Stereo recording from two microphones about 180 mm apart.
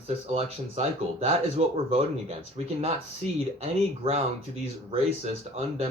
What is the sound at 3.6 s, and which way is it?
Speech, 35° right (ahead or behind).